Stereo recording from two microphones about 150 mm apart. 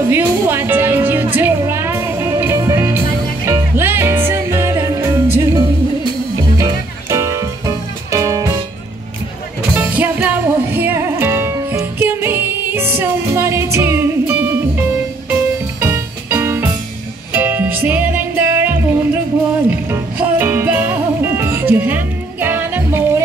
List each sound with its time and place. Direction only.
0.1 s music: 15° right (ahead or behind)
9.8 s music: 10° right (ahead or behind)